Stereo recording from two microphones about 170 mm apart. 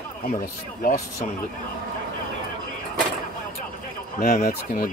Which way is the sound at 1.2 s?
50° left (ahead or behind).